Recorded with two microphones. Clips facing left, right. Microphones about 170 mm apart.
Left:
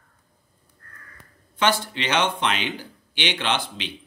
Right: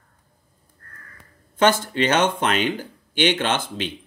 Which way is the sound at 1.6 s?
50° right (ahead or behind).